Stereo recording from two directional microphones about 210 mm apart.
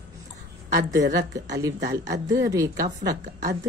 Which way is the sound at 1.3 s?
15° right (ahead or behind).